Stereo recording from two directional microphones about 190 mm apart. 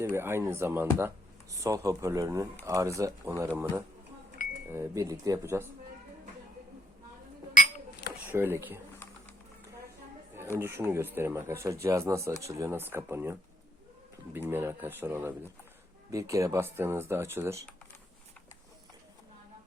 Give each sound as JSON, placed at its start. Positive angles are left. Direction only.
{"t": 0.0, "sound": "speech", "side_deg": -15}
{"t": 4.7, "sound": "speech", "side_deg": -15}
{"t": 7.5, "sound": "a sound", "side_deg": 45}
{"t": 8.3, "sound": "speech", "side_deg": -10}
{"t": 10.6, "sound": "speech", "side_deg": -10}
{"t": 14.3, "sound": "speech", "side_deg": -10}